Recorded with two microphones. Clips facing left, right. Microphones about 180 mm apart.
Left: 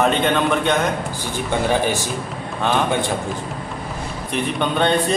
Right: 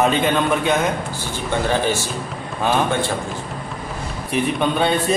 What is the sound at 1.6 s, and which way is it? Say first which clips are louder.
Speech: even; 15° left (ahead or behind).